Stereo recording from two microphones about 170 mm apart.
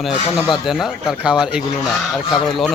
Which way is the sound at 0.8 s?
5° right (ahead or behind).